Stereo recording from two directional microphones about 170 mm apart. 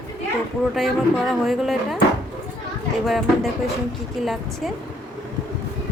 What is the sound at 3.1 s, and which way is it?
Speech, centre (ahead or behind).